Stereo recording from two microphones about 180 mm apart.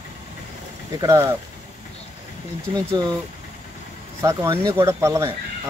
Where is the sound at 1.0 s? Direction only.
15° right (ahead or behind).